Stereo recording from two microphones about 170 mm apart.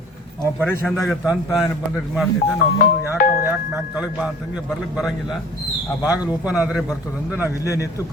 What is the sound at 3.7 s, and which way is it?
A man's voice, 5° right (ahead or behind).